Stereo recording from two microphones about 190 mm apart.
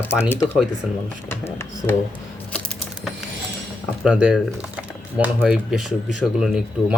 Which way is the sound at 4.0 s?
5° right (ahead or behind).